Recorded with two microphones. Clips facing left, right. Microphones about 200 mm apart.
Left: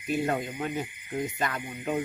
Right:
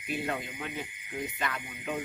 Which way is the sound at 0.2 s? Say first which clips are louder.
Left 6 dB; 40° left (ahead or behind).